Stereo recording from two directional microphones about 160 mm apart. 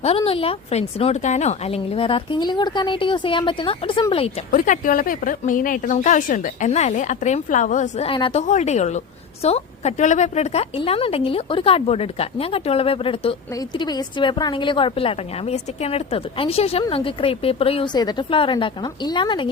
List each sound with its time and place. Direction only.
0.0 s a woman's voice: 40° left (ahead or behind)
4.5 s a woman's voice: 55° left (ahead or behind)
8.1 s a woman's voice: 30° left (ahead or behind)
8.4 s a woman's voice: 45° left (ahead or behind); by 19.5 s 30° left (ahead or behind)